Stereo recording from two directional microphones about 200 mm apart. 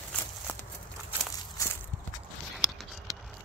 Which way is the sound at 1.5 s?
15° left (ahead or behind).